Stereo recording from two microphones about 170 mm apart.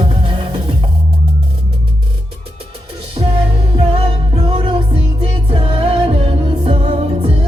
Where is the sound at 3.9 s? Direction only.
35° right (ahead or behind).